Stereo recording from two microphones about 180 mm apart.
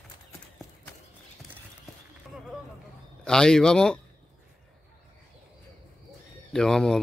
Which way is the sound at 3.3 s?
5° left (ahead or behind).